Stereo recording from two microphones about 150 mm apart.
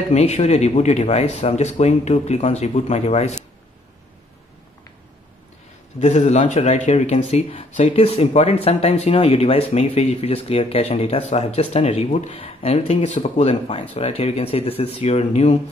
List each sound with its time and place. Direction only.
0.1 s speech: 45° left (ahead or behind)
5.9 s speech: 50° left (ahead or behind)